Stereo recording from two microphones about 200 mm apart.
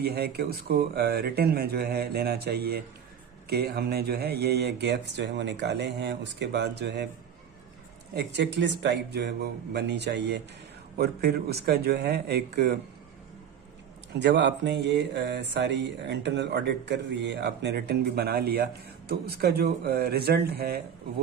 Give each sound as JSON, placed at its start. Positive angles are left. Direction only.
{"t": 0.0, "sound": "speech", "side_deg": -50}
{"t": 3.4, "sound": "mantra", "side_deg": -50}
{"t": 8.1, "sound": "mantra", "side_deg": -60}
{"t": 11.0, "sound": "speech", "side_deg": -50}
{"t": 14.2, "sound": "mantra", "side_deg": -60}